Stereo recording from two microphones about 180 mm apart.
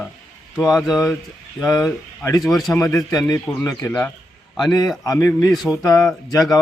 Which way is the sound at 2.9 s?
20° left (ahead or behind).